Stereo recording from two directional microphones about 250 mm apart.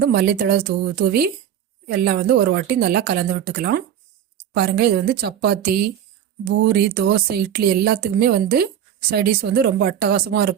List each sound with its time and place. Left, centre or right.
0.0 s speech: right